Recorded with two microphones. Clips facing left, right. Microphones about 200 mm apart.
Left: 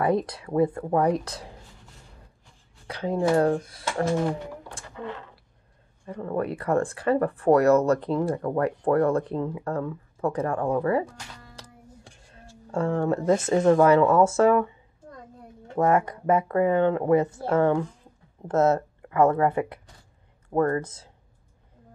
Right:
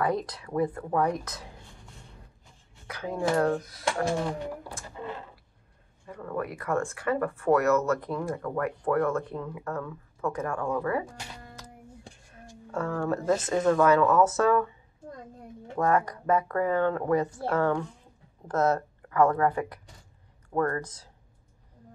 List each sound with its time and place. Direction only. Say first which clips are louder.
0.0 s speech: left 4 dB; 25° left (ahead or behind)
2.9 s speech: left 5 dB; 30° left (ahead or behind)
6.0 s speech: left 5 dB; 30° left (ahead or behind)
12.7 s speech: left 5 dB; 25° left (ahead or behind)
15.7 s speech: left 3 dB; 25° left (ahead or behind)